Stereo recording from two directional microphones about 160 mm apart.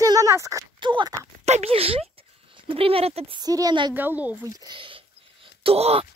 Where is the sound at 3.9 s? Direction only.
10° right (ahead or behind).